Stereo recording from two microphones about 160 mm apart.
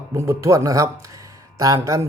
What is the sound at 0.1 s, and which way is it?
Speech, 15° right (ahead or behind).